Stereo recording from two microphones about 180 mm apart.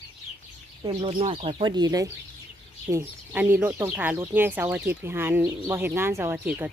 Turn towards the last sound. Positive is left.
turn(degrees=-10)  # may be behind; listen again after turning